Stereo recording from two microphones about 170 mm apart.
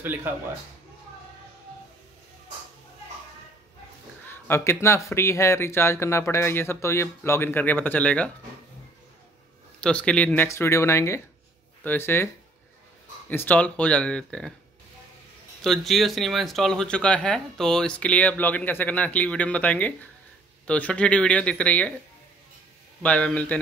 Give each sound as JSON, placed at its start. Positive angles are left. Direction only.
{"t": 0.0, "sound": "a man's voice", "side_deg": -10}
{"t": 4.3, "sound": "speech", "side_deg": 15}
{"t": 9.8, "sound": "speech", "side_deg": 5}
{"t": 13.3, "sound": "speech", "side_deg": 10}
{"t": 15.6, "sound": "speech", "side_deg": 0}
{"t": 23.0, "sound": "speech", "side_deg": 10}